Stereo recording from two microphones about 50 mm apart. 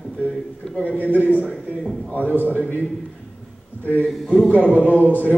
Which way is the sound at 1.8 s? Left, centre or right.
Centre.